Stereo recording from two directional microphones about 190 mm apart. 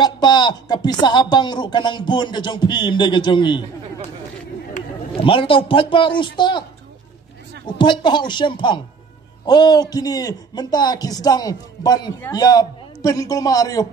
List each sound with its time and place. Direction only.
0.0 s a man's voice: 25° left (ahead or behind)
5.1 s a man's voice: 25° left (ahead or behind)
7.6 s a man's voice: 25° left (ahead or behind)